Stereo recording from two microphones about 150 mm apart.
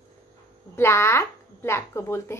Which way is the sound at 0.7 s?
15° left (ahead or behind).